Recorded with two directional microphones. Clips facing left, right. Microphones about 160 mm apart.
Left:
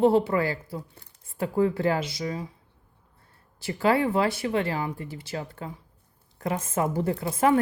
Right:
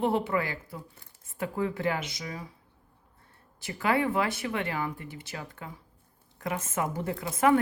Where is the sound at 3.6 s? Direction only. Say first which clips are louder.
Left 4 dB; 30° left (ahead or behind).